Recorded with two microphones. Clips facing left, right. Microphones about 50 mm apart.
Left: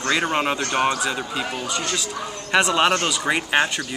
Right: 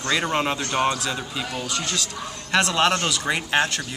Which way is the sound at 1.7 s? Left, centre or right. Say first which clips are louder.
Left 2 dB; centre.